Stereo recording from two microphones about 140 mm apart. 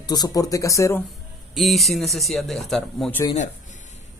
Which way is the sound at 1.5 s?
Centre (ahead or behind).